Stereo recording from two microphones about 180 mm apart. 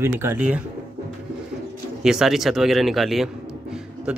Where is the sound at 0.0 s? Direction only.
15° right (ahead or behind).